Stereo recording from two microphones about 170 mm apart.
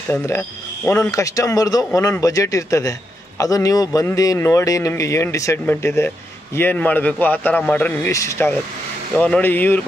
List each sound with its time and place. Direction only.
0.1 s a man's voice: 10° left (ahead or behind)